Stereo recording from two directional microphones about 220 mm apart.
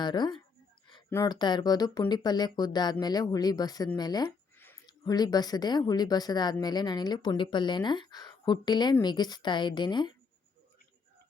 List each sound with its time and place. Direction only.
0.0 s speech: 20° left (ahead or behind)